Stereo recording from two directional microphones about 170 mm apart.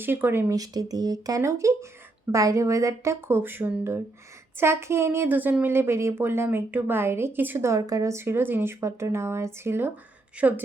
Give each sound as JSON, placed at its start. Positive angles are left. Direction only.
{"t": 0.0, "sound": "speech", "side_deg": -10}